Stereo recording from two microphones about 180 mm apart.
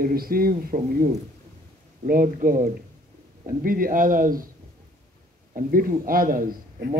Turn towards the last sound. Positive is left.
turn(degrees=-50)  # may be behind; listen again after turning